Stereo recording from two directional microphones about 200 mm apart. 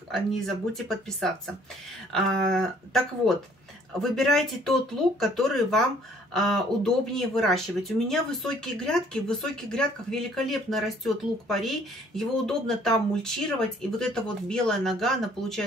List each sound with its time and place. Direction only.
0.1 s speech: centre (ahead or behind)